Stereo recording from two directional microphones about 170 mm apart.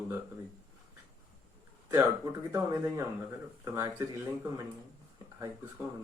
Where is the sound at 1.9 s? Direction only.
20° right (ahead or behind).